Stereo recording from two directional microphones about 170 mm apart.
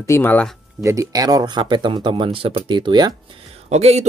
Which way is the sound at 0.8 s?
20° right (ahead or behind).